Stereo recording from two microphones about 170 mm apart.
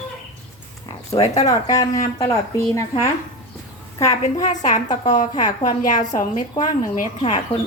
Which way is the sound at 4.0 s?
20° left (ahead or behind).